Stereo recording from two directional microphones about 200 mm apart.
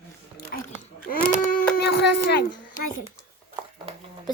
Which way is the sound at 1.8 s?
55° left (ahead or behind).